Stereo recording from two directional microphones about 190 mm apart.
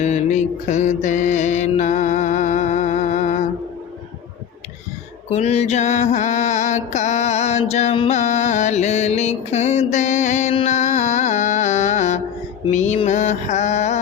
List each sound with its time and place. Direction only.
0.0 s mantra: 35° left (ahead or behind)
5.3 s mantra: 35° left (ahead or behind)